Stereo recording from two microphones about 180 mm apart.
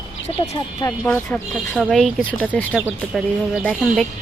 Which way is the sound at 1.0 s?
10° left (ahead or behind).